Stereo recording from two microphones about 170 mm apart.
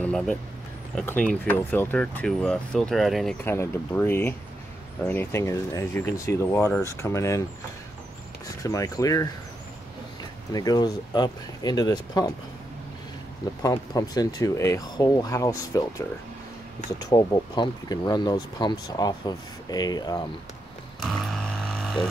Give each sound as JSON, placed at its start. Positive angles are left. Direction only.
{"t": 0.0, "sound": "speech", "side_deg": 5}
{"t": 3.4, "sound": "speech", "side_deg": 10}
{"t": 8.6, "sound": "speech", "side_deg": 20}
{"t": 10.5, "sound": "speech", "side_deg": 20}
{"t": 13.6, "sound": "speech", "side_deg": 20}
{"t": 17.0, "sound": "speech", "side_deg": 25}
{"t": 21.0, "sound": "a sound", "side_deg": 0}